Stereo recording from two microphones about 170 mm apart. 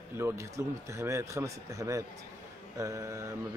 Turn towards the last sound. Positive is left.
turn(degrees=-15)  # may be behind; listen again after turning